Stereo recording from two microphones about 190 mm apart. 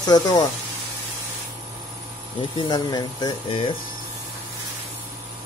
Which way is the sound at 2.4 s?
25° left (ahead or behind).